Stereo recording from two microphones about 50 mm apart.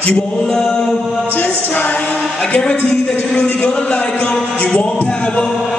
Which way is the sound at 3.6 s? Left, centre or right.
Centre.